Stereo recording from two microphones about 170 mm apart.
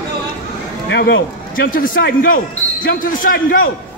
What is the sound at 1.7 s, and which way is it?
Speech, 55° left (ahead or behind).